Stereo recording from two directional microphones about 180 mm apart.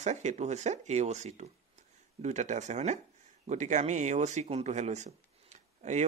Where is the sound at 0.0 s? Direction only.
40° right (ahead or behind).